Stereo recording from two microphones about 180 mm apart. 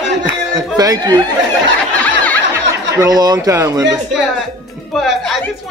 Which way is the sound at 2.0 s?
10° left (ahead or behind).